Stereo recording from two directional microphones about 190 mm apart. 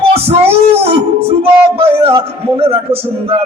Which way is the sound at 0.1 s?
30° right (ahead or behind).